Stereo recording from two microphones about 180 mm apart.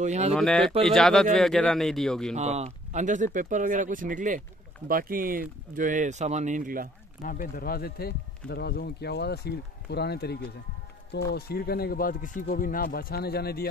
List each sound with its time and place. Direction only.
0.0 s speech: 40° right (ahead or behind)
0.3 s a man's voice: centre (ahead or behind)
2.3 s speech: 40° right (ahead or behind)
7.2 s speech: 55° left (ahead or behind)